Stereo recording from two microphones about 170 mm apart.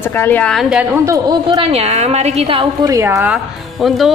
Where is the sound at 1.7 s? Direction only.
40° right (ahead or behind).